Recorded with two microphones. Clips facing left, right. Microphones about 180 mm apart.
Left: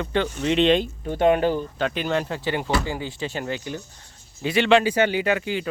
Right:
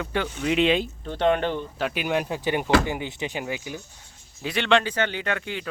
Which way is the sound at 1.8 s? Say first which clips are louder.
Left 1 dB; 10° right (ahead or behind).